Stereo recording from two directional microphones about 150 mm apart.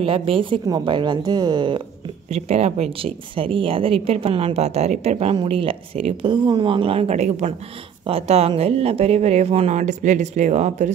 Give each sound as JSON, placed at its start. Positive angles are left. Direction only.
{"t": 0.0, "sound": "speech", "side_deg": -35}
{"t": 2.2, "sound": "speech", "side_deg": -45}
{"t": 5.3, "sound": "speech", "side_deg": -35}